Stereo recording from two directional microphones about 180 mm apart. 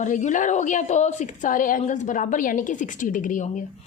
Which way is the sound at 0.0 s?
45° left (ahead or behind).